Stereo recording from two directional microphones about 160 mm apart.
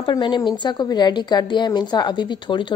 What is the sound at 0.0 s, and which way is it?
A woman's voice, 30° left (ahead or behind).